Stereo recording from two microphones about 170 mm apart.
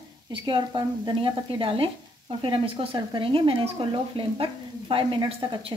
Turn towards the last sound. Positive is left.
turn(degrees=-30)  # may be behind; listen again after turning